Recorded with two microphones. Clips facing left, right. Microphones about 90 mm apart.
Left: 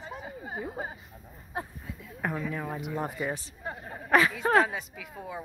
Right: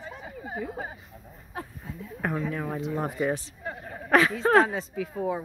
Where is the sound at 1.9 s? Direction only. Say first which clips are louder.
Right 3 dB; centre (ahead or behind).